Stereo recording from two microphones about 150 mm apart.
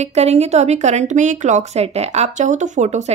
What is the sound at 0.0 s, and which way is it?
Speech, 45° right (ahead or behind).